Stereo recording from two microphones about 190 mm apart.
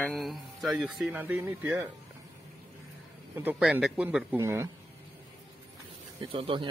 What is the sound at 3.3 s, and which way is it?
Speech, 10° right (ahead or behind).